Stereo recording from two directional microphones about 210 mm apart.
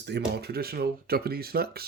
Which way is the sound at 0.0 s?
50° right (ahead or behind).